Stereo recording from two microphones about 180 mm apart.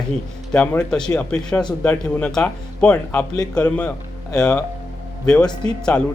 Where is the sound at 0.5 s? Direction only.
5° left (ahead or behind).